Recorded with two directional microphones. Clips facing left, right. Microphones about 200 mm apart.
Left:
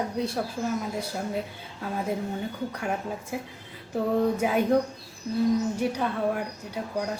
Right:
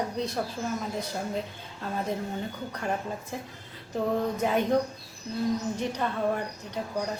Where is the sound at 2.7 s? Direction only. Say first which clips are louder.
Left 1 dB; 10° left (ahead or behind).